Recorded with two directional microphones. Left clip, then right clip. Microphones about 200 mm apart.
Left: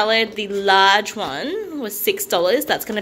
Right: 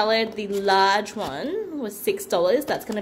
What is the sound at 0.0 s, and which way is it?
Speech, centre (ahead or behind).